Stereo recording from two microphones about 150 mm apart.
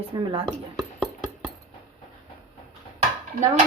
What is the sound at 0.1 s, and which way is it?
Speech, 35° right (ahead or behind).